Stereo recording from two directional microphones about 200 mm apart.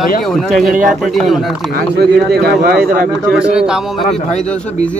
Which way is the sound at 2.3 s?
50° right (ahead or behind).